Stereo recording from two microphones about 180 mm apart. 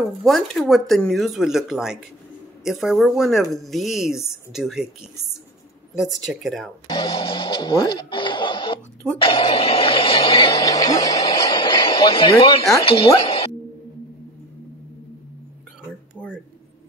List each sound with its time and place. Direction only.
0.2 s speech: centre (ahead or behind)
6.2 s speech: centre (ahead or behind)
6.9 s speech: 25° left (ahead or behind)
7.7 s a sound: 25° left (ahead or behind)
9.2 s music: 30° left (ahead or behind)
16.2 s a sound: 10° left (ahead or behind)